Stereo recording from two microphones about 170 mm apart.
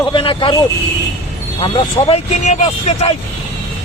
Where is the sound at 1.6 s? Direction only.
35° left (ahead or behind).